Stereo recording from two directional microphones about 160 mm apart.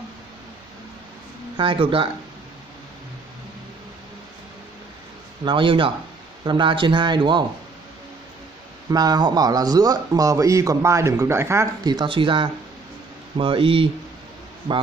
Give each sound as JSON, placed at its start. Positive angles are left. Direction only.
{"t": 1.6, "sound": "speech", "side_deg": -35}
{"t": 5.4, "sound": "speech", "side_deg": -30}
{"t": 8.9, "sound": "speech", "side_deg": -25}